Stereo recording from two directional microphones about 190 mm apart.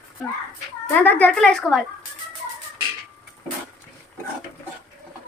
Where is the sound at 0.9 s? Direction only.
10° left (ahead or behind).